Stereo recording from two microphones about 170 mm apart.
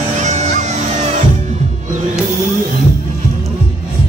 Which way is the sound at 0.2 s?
45° right (ahead or behind).